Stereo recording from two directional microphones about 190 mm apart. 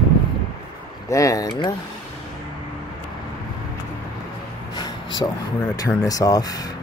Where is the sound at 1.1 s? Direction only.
15° left (ahead or behind).